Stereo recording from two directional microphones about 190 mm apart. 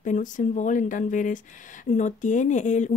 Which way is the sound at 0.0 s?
40° left (ahead or behind).